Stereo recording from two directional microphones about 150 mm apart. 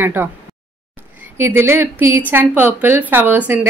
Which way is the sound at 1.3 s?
15° right (ahead or behind).